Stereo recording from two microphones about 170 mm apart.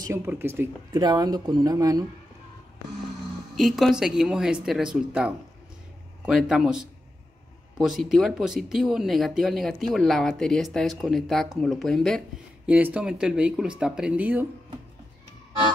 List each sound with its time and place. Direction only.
0.0 s speech: 15° right (ahead or behind)
0.9 s speech: 25° right (ahead or behind)
3.5 s speech: centre (ahead or behind)